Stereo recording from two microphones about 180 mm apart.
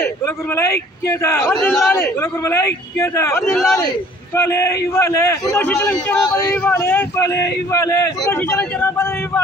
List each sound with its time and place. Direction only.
0.0 s a man's voice: 15° left (ahead or behind)